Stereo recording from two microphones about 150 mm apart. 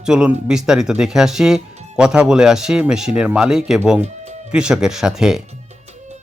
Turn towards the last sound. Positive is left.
turn(degrees=-5)  # may be behind; listen again after turning